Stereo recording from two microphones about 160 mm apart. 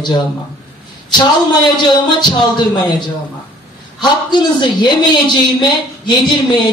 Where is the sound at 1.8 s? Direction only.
30° left (ahead or behind).